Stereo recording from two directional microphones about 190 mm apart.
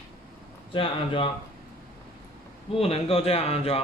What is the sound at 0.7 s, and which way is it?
Speech, 25° left (ahead or behind).